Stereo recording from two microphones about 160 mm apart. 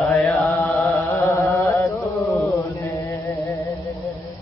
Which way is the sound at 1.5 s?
20° left (ahead or behind).